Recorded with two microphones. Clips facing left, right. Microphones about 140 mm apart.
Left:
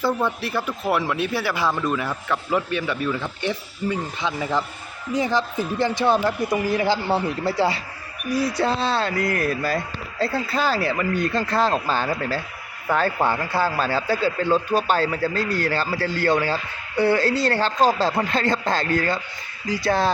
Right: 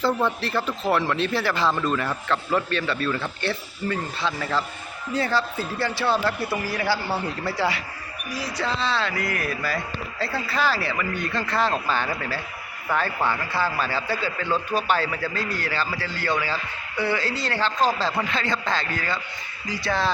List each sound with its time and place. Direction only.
0.0 s a man's voice: 10° left (ahead or behind); by 7.8 s 30° left (ahead or behind)
8.5 s a man's voice: 50° left (ahead or behind)
14.5 s a man's voice: 35° left (ahead or behind)